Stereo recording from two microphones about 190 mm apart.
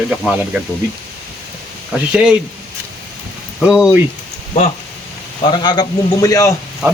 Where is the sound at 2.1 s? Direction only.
5° right (ahead or behind).